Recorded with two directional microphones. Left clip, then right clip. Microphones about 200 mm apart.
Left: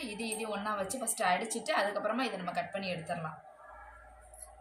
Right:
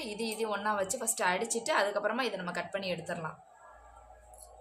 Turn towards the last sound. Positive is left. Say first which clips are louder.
# right 2 dB
turn(degrees=-55)  # may be behind; listen again after turning